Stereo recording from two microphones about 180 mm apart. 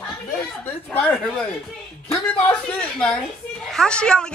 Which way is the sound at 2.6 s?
5° left (ahead or behind).